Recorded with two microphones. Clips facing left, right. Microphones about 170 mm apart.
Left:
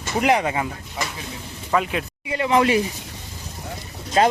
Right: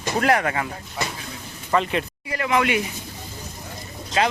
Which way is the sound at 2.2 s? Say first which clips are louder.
Left 5 dB; 25° left (ahead or behind).